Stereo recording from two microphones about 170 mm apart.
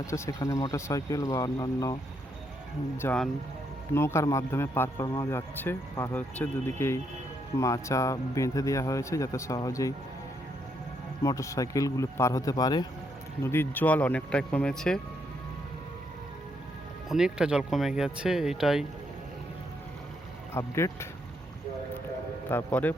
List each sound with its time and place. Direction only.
0.0 s speech: 20° left (ahead or behind)
3.0 s a man's voice: 10° left (ahead or behind)
11.2 s a man's voice: 20° left (ahead or behind)
17.1 s speech: 5° right (ahead or behind)
20.5 s a man's voice: 15° left (ahead or behind)
22.4 s a man's voice: 10° left (ahead or behind)